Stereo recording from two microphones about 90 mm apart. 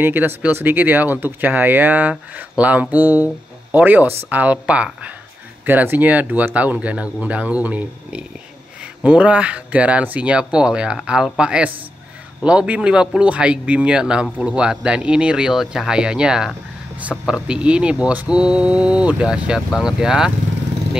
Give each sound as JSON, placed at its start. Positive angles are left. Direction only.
{"t": 0.0, "sound": "speech", "side_deg": -20}